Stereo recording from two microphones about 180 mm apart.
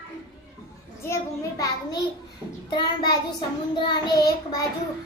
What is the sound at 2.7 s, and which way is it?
Child singing, 25° left (ahead or behind).